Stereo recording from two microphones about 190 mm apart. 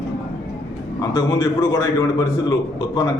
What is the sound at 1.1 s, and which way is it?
A man's voice, 20° left (ahead or behind).